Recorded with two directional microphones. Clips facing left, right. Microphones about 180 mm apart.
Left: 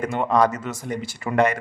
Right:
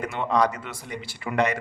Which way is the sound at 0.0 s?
45° left (ahead or behind).